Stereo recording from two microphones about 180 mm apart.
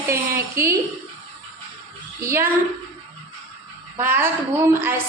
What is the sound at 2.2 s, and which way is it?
Speech, 15° right (ahead or behind).